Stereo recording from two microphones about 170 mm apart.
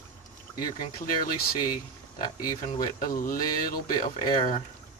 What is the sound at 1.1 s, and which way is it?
Speech, 55° left (ahead or behind).